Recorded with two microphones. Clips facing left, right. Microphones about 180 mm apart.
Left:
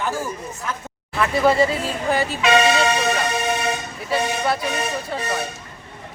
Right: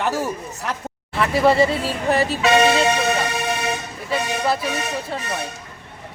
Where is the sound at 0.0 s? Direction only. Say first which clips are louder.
Right 3 dB; 70° right (ahead or behind).